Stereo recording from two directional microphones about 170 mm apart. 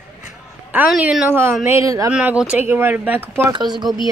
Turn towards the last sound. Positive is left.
turn(degrees=-25)  # may be behind; listen again after turning